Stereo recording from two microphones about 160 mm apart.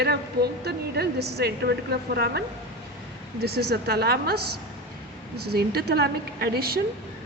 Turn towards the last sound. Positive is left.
turn(degrees=-75)  # may be behind; listen again after turning